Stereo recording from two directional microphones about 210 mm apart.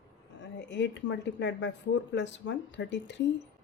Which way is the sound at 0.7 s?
55° left (ahead or behind).